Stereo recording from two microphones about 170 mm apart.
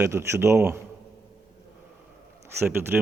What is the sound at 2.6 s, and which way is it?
Speech, 10° right (ahead or behind).